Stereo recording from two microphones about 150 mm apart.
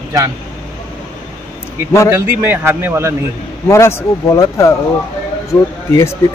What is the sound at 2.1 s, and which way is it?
A man's voice, 20° right (ahead or behind).